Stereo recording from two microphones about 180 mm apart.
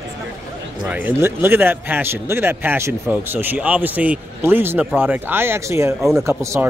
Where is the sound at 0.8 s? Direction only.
10° right (ahead or behind).